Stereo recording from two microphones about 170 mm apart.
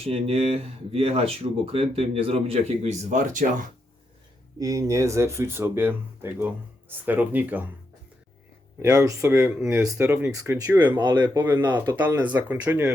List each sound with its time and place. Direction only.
0.0 s speech: 35° right (ahead or behind)
4.6 s speech: 20° right (ahead or behind)
8.8 s speech: 20° right (ahead or behind)
10.9 s speech: 25° right (ahead or behind)
12.0 s speech: 10° right (ahead or behind)